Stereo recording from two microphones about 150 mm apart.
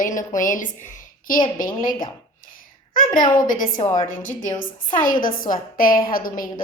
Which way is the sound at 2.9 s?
60° left (ahead or behind).